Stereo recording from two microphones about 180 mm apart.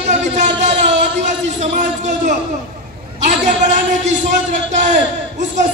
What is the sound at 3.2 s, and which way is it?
A man's voice, 45° right (ahead or behind).